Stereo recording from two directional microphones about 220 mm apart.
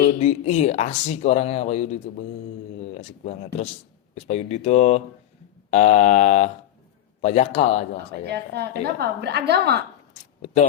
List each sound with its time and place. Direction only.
0.2 s speech: 30° left (ahead or behind)
5.7 s mantra: 30° left (ahead or behind)
7.2 s speech: 30° left (ahead or behind)
8.3 s a woman's voice: 50° right (ahead or behind)
10.4 s mantra: 35° left (ahead or behind)